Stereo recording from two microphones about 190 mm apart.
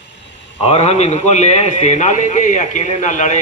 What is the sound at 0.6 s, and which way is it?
A man's voice, 30° left (ahead or behind).